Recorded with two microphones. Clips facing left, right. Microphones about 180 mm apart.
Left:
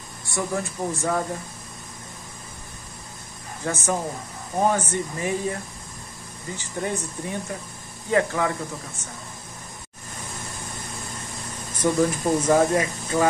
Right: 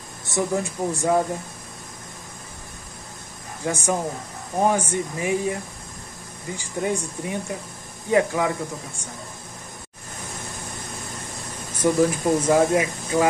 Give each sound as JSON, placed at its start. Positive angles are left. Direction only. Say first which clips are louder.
{"t": 0.2, "sound": "speech", "louder": "right 3 dB", "side_deg": -20}
{"t": 3.6, "sound": "speech", "louder": "right 2 dB", "side_deg": -15}
{"t": 11.8, "sound": "speech", "louder": "right 2 dB", "side_deg": -10}